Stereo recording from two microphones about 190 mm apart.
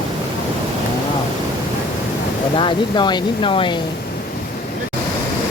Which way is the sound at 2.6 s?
25° left (ahead or behind).